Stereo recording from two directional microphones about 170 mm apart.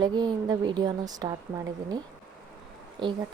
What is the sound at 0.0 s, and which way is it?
Speech, 25° right (ahead or behind).